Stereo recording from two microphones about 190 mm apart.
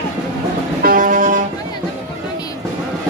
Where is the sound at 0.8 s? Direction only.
45° right (ahead or behind).